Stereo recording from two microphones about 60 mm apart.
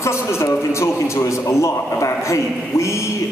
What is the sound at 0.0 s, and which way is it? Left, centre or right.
A man's voice, left.